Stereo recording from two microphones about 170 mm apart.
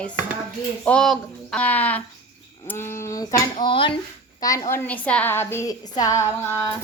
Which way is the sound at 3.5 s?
30° left (ahead or behind).